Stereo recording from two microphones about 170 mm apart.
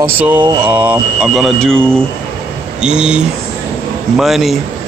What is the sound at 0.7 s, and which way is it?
Speech, 10° right (ahead or behind).